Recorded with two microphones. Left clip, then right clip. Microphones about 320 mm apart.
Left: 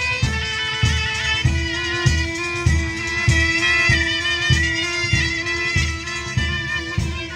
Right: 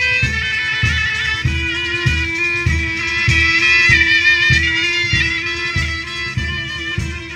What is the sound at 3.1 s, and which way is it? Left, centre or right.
Music, left.